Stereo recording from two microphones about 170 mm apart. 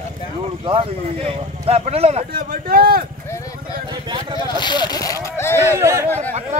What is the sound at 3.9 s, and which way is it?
Vehicle, 25° right (ahead or behind).